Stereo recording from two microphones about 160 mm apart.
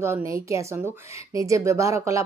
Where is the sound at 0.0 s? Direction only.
15° right (ahead or behind).